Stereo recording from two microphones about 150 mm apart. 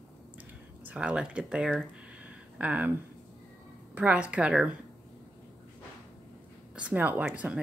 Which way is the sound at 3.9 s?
10° right (ahead or behind).